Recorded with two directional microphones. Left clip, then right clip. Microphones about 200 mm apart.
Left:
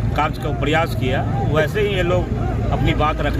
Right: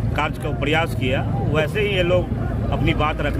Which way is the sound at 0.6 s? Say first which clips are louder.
Left 1 dB; 30° right (ahead or behind).